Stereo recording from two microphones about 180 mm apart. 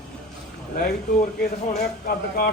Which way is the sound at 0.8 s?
60° left (ahead or behind).